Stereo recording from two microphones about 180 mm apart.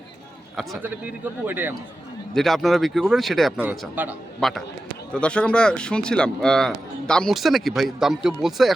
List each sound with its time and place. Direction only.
0.8 s speech: 10° right (ahead or behind)
2.3 s speech: centre (ahead or behind)
4.4 s a man's voice: centre (ahead or behind)